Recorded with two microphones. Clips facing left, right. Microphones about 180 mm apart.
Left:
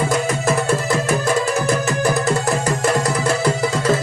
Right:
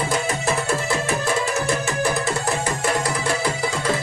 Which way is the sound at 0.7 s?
40° left (ahead or behind).